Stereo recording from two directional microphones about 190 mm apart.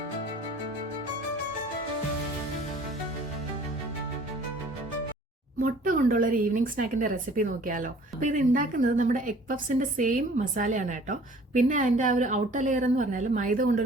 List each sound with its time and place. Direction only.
5.6 s speech: 45° right (ahead or behind)